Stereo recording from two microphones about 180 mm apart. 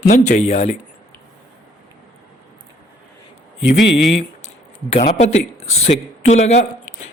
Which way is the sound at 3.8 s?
80° left.